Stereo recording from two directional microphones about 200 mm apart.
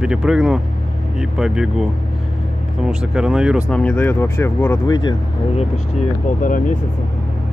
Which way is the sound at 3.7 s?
5° left (ahead or behind).